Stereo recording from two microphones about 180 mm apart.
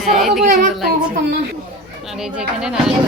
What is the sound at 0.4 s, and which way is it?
Speech, 45° right (ahead or behind).